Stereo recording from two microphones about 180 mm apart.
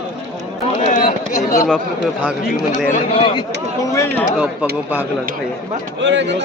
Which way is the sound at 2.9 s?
30° left (ahead or behind).